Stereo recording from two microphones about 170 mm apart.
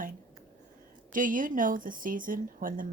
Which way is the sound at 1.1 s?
50° right (ahead or behind).